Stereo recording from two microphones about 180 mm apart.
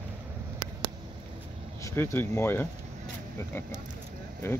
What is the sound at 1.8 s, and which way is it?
Speech, 15° left (ahead or behind).